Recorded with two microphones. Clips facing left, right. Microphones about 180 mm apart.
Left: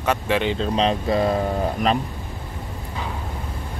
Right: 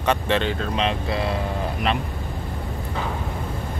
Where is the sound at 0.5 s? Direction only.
35° left (ahead or behind).